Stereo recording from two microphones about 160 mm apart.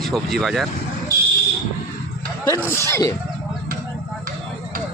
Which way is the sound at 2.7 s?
15° left (ahead or behind).